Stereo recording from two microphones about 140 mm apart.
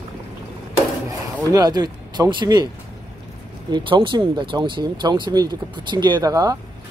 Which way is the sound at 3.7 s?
35° right (ahead or behind).